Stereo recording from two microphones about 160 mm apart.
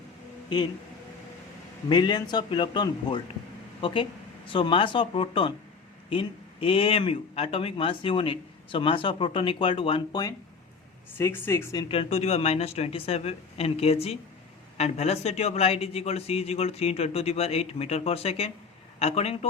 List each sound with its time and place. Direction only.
1.9 s speech: 30° left (ahead or behind)
11.2 s speech: 15° left (ahead or behind)
11.9 s speech: 40° left (ahead or behind)